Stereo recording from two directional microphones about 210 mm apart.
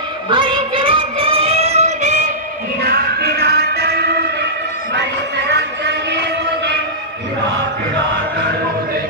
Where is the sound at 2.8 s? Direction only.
50° right (ahead or behind).